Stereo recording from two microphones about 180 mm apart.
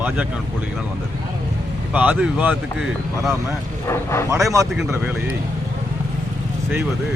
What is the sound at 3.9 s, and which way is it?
Speech, 15° left (ahead or behind).